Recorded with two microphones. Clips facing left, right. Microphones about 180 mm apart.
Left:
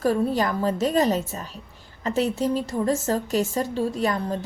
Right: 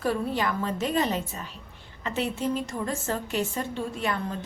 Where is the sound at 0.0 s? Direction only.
40° left (ahead or behind).